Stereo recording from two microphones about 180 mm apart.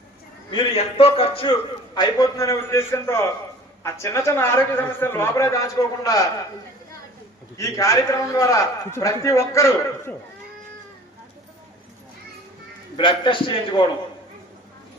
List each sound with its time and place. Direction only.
0.5 s a man's voice: 35° left (ahead or behind)
7.5 s a man's voice: 20° left (ahead or behind)
13.0 s a man's voice: 25° left (ahead or behind)